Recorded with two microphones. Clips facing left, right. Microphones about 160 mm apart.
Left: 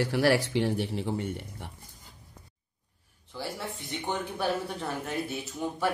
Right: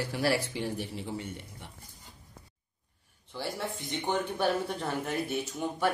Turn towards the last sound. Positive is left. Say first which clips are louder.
# even
turn(degrees=0)  # may be behind; listen again after turning